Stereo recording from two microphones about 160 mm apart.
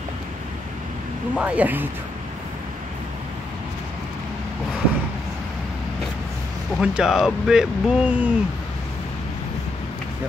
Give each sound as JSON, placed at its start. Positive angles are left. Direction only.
{"t": 1.3, "sound": "speech", "side_deg": -10}
{"t": 6.8, "sound": "speech", "side_deg": -5}